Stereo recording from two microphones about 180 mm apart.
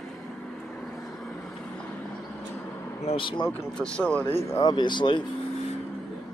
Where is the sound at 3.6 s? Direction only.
5° left (ahead or behind).